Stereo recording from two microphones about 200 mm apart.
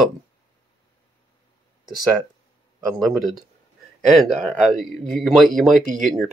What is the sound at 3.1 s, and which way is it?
Speech, centre (ahead or behind).